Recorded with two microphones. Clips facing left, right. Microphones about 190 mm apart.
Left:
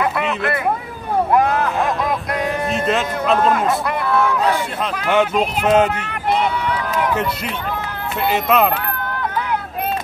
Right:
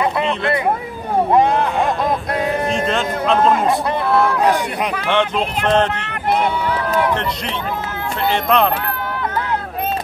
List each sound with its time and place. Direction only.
1.3 s speech: 25° right (ahead or behind)
2.7 s a man's voice: 5° left (ahead or behind)
4.1 s speech: 15° right (ahead or behind)
5.0 s speech: 5° left (ahead or behind)
8.3 s a man's voice: 5° left (ahead or behind)